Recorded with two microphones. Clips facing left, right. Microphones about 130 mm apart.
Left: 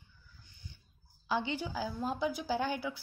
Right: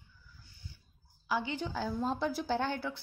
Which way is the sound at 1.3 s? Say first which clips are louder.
Even; 20° left (ahead or behind).